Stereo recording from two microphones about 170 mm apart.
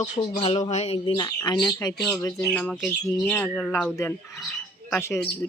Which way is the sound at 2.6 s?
5° left (ahead or behind).